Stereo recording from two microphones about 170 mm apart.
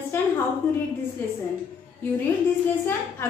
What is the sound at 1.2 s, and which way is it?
Speech, 15° left (ahead or behind).